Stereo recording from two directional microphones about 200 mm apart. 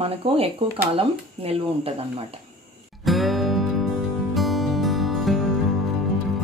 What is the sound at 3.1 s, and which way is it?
Music, centre (ahead or behind).